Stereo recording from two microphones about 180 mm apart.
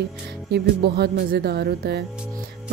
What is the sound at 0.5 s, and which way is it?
Speech, 65° right (ahead or behind).